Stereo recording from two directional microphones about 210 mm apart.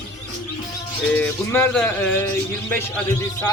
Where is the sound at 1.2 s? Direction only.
10° left (ahead or behind).